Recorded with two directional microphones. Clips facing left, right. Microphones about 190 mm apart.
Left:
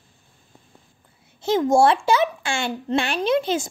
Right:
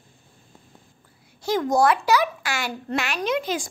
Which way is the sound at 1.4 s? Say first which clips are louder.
Left 3 dB; 25° left (ahead or behind).